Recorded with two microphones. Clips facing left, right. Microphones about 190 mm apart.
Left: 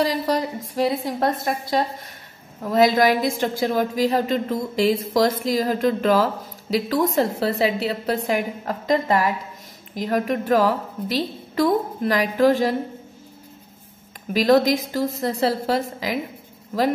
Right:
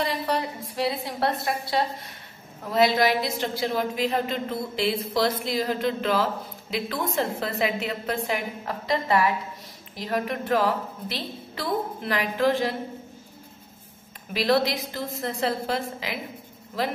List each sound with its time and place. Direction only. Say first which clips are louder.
0.0 s a woman's voice: left 5 dB; 40° left (ahead or behind)
14.3 s a woman's voice: left 6 dB; 45° left (ahead or behind)